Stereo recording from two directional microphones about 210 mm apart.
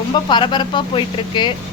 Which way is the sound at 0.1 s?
20° left (ahead or behind).